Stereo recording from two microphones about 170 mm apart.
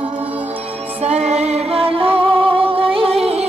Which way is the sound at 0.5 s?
40° right (ahead or behind).